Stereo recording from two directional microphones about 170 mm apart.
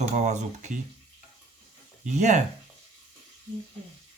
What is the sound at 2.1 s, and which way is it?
Speech, 45° right (ahead or behind).